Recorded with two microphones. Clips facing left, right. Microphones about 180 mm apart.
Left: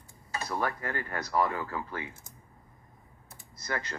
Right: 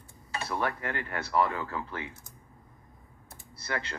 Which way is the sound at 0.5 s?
40° left (ahead or behind).